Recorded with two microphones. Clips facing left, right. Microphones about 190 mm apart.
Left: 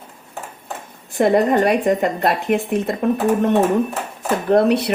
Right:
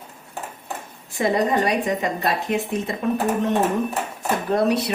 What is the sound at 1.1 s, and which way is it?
Speech, 60° left (ahead or behind).